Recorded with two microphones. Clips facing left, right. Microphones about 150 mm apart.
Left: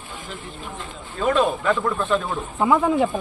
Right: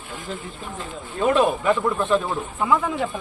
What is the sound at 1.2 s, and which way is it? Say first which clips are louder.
A man's voice: right 1 dB; 20° right (ahead or behind).